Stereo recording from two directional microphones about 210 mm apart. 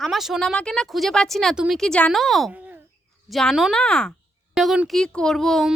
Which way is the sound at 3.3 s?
Centre (ahead or behind).